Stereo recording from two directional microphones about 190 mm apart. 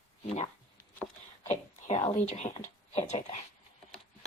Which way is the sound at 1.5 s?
35° left (ahead or behind).